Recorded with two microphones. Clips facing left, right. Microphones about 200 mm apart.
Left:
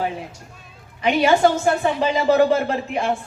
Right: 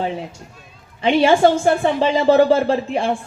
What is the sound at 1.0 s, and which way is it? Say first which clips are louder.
A woman's voice: right 3 dB; 30° right (ahead or behind).